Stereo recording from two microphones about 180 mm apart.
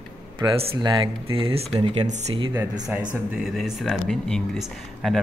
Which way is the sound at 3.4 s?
Centre (ahead or behind).